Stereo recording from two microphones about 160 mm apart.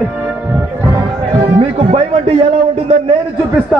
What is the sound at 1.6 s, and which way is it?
Speech, 35° right (ahead or behind).